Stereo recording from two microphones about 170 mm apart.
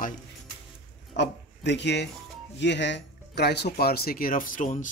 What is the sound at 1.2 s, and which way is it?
Speech, 90° left.